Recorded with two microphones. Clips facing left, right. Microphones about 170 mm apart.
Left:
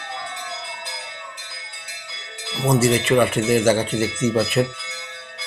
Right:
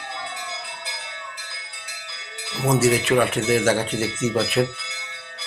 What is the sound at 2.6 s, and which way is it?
Speech, 5° right (ahead or behind).